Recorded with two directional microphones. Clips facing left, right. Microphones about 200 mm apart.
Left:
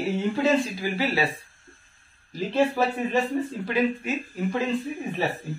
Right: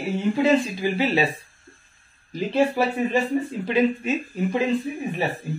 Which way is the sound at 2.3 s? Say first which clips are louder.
Right 2 dB; 15° right (ahead or behind).